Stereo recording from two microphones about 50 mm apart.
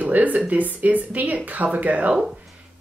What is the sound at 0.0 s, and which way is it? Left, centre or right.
Speech, right.